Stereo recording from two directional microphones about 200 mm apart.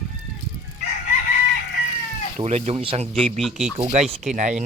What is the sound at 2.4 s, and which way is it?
Speech, 30° right (ahead or behind).